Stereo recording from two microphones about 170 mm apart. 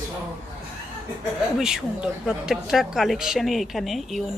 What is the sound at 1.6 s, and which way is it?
Speech, 5° right (ahead or behind).